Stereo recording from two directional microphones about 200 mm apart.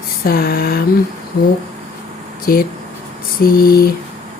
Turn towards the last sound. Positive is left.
turn(degrees=50)  # may be behind; listen again after turning